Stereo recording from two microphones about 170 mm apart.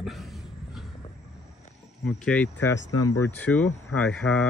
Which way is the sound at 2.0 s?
5° left (ahead or behind).